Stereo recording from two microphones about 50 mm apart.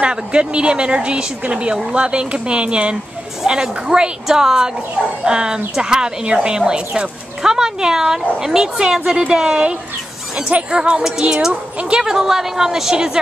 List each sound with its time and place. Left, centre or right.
0.0 s speech: right